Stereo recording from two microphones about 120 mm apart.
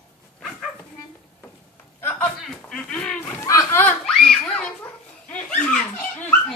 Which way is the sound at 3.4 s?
25° left (ahead or behind).